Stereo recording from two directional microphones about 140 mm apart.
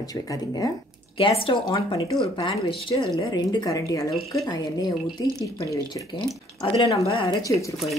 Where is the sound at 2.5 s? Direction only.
25° left (ahead or behind).